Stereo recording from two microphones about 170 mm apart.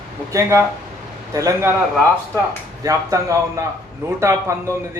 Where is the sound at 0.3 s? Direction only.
15° right (ahead or behind).